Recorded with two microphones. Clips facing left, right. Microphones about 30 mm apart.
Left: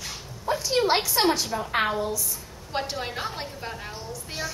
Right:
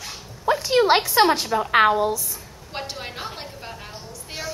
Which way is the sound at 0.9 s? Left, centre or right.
Right.